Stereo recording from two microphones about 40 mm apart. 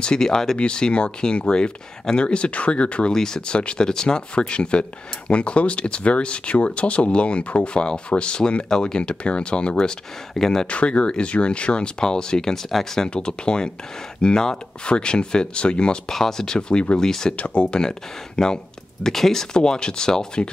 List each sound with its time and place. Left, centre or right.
0.0 s speech: centre
3.1 s speech: centre
10.7 s speech: left; by 13.1 s centre
13.1 s speech: left
16.1 s speech: centre
17.4 s speech: left
17.7 s speech: centre
19.5 s speech: centre